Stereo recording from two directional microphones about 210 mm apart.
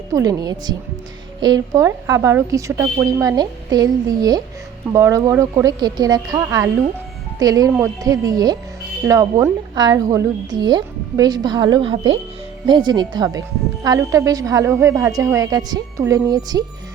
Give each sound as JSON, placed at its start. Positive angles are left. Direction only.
{"t": 0.1, "sound": "a woman's voice", "side_deg": -15}